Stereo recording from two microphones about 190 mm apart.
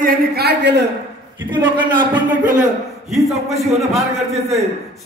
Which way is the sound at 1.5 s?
25° right (ahead or behind).